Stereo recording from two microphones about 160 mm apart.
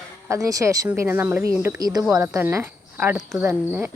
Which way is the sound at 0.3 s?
20° right (ahead or behind).